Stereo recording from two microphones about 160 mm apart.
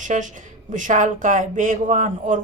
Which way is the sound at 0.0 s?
50° right (ahead or behind).